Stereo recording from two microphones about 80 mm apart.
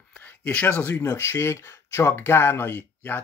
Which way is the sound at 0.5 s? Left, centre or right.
Left.